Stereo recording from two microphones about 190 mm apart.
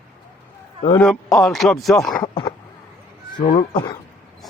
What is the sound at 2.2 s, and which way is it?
Speech, 20° left (ahead or behind).